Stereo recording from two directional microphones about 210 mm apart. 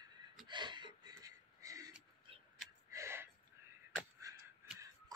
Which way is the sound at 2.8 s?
15° right (ahead or behind).